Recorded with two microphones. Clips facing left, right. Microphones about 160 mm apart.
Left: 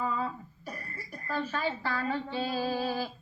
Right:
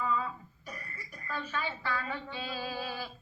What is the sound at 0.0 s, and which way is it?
Cough, 35° left (ahead or behind).